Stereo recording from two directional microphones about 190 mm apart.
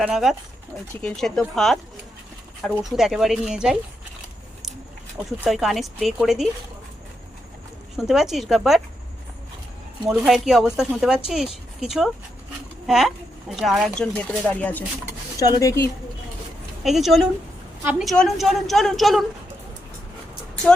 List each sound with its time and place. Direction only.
0.0 s speech: centre (ahead or behind)
5.4 s speech: centre (ahead or behind)
7.9 s speech: centre (ahead or behind)
10.1 s speech: centre (ahead or behind); by 15.8 s 20° left (ahead or behind)
16.8 s speech: centre (ahead or behind)